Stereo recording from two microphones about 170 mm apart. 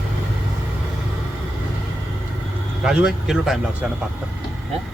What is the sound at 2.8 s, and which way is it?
A man's voice, 5° right (ahead or behind).